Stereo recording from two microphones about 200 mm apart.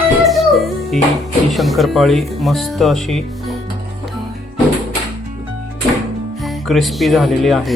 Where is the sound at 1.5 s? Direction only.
Centre (ahead or behind).